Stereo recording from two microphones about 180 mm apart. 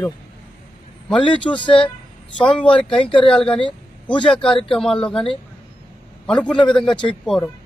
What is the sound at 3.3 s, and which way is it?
A man's voice, 5° left (ahead or behind).